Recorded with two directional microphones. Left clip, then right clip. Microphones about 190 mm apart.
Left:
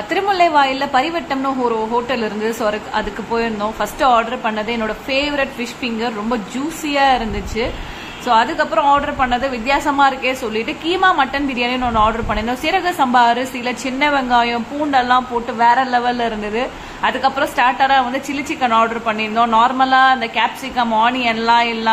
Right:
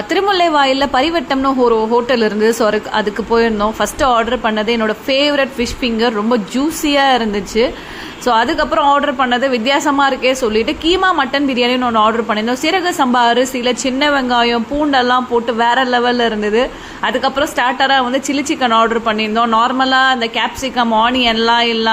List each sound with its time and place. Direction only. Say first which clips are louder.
0.1 s a woman's voice: right 1 dB; 20° right (ahead or behind)